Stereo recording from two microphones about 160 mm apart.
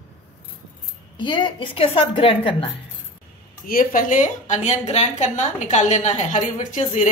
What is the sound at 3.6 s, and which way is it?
A woman's voice, 60° left (ahead or behind).